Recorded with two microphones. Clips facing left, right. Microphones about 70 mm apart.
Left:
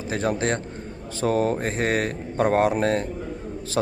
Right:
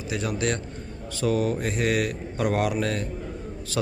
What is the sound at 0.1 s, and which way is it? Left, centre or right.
Speech, left.